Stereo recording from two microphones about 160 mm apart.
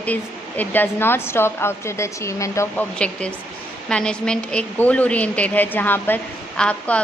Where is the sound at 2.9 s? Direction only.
5° left (ahead or behind).